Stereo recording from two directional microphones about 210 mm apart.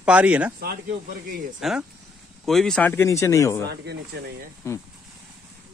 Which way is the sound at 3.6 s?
50° right (ahead or behind).